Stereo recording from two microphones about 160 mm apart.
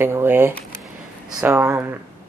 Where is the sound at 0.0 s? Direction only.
15° right (ahead or behind).